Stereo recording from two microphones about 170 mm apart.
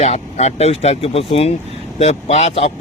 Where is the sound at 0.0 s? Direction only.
40° left (ahead or behind).